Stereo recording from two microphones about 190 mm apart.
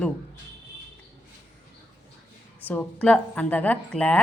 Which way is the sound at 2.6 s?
5° left (ahead or behind).